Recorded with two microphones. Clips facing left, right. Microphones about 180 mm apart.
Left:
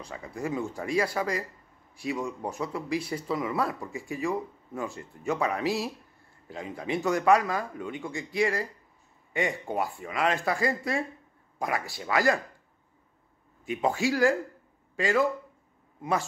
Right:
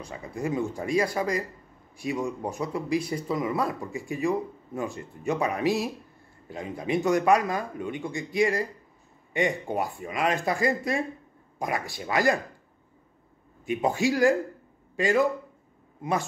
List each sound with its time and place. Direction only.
0.0 s speech: 20° right (ahead or behind)
13.7 s speech: 20° right (ahead or behind)